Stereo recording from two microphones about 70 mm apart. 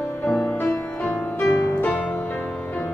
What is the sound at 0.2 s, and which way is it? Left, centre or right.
Music, centre.